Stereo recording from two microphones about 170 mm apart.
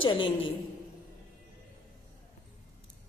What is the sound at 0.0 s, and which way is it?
Speech, 30° left (ahead or behind).